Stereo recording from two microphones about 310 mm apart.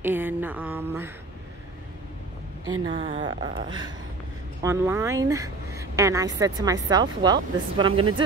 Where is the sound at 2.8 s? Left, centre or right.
Centre.